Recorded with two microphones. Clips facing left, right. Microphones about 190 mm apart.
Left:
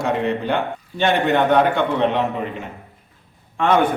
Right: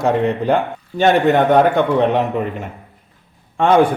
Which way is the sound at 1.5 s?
40° right (ahead or behind).